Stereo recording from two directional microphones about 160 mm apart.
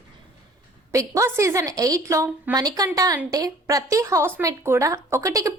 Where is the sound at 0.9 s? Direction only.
20° right (ahead or behind).